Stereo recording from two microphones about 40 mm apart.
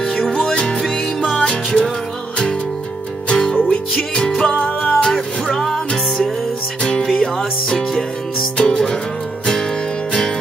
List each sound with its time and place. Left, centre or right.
0.0 s music: centre
3.3 s music: left
6.8 s music: left
7.2 s music: centre